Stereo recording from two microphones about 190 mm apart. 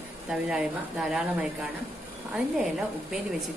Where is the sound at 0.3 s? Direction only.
5° right (ahead or behind).